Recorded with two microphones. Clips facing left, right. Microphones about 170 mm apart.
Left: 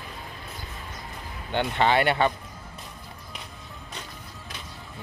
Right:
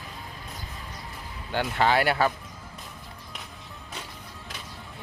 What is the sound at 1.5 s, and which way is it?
Speech, centre (ahead or behind).